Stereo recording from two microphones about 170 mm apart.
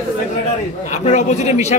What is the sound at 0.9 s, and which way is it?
Speech, 40° left (ahead or behind).